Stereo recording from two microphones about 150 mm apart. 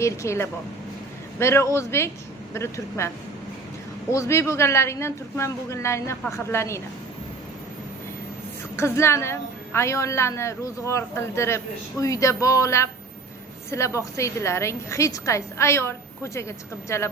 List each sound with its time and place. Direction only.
0.0 s a woman's voice: 20° left (ahead or behind)
4.1 s a woman's voice: 20° left (ahead or behind)
8.7 s a woman's voice: 15° left (ahead or behind)